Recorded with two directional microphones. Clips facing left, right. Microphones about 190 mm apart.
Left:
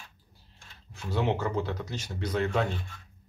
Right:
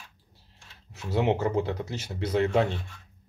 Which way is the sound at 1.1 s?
25° right (ahead or behind).